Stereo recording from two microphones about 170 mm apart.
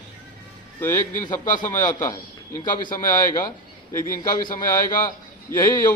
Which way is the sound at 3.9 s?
15° left (ahead or behind).